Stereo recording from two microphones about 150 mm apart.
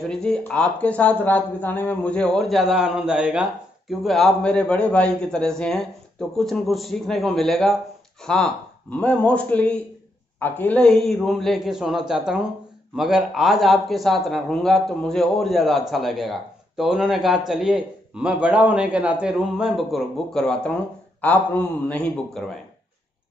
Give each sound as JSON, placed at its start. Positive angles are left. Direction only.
{"t": 0.0, "sound": "speech", "side_deg": 5}
{"t": 8.9, "sound": "a man's voice", "side_deg": 10}